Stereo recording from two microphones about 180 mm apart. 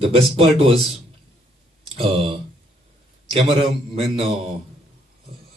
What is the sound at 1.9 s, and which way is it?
A man's voice, 30° right (ahead or behind).